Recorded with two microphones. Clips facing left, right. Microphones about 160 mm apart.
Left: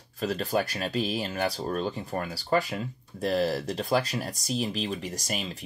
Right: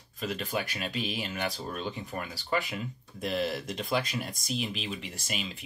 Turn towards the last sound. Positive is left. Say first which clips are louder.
# left 4 dB
turn(degrees=40)  # may be behind; listen again after turning